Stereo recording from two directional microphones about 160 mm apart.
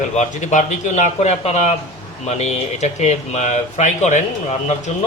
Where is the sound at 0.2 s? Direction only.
50° left (ahead or behind).